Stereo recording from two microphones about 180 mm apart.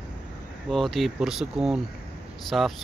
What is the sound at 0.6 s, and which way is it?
Speech, centre (ahead or behind).